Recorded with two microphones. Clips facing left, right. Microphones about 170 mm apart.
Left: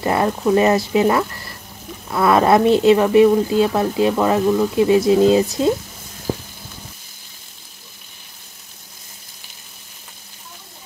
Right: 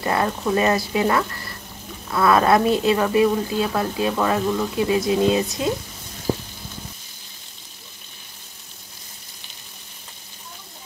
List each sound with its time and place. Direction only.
0.0 s speech: 20° left (ahead or behind)